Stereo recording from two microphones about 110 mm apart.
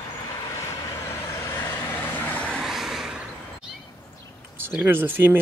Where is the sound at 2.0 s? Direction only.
15° left (ahead or behind).